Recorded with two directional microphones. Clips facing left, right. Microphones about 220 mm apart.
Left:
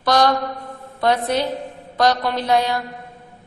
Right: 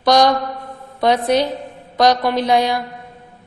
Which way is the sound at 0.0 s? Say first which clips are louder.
Right 4 dB; 15° right (ahead or behind).